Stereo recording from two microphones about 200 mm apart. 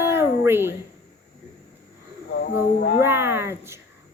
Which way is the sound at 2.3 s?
55° left (ahead or behind).